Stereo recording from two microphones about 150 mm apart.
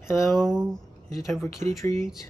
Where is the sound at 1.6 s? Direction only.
50° right (ahead or behind).